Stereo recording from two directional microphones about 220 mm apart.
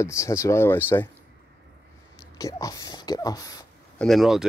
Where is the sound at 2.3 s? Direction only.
15° left (ahead or behind).